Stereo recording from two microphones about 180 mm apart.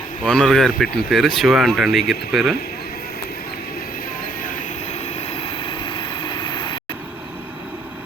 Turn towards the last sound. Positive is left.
turn(degrees=25)  # may be behind; listen again after turning